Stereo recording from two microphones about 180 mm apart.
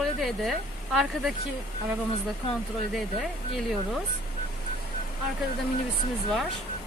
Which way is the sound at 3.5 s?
Centre (ahead or behind).